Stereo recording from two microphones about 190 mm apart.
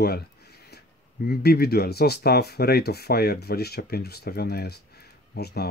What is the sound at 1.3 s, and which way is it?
Speech, 55° left (ahead or behind).